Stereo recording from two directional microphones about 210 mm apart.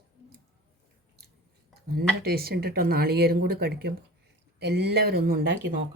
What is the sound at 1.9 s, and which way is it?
A woman's voice, 45° right (ahead or behind).